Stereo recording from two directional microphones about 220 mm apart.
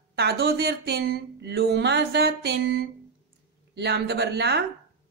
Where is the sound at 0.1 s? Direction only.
50° right (ahead or behind).